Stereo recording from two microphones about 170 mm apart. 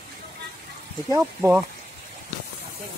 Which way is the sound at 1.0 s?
15° right (ahead or behind).